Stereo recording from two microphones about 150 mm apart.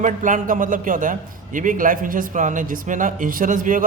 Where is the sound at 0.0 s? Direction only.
60° right (ahead or behind).